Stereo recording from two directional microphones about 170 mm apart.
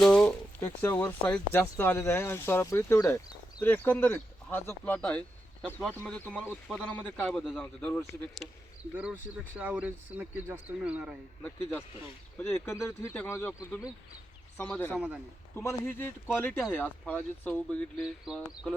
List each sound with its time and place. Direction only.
0.0 s a sound: 5° left (ahead or behind)
0.9 s a man's voice: 10° left (ahead or behind)
9.6 s speech: 10° right (ahead or behind)
12.4 s a man's voice: 15° left (ahead or behind)
14.9 s speech: 10° right (ahead or behind)
15.5 s a man's voice: 15° left (ahead or behind)